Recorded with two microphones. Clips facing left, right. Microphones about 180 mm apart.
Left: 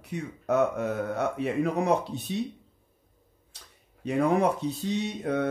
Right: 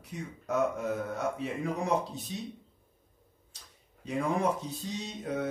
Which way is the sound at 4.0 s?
65° left (ahead or behind).